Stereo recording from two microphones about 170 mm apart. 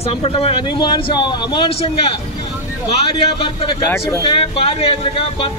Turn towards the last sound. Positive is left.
turn(degrees=30)  # may be behind; listen again after turning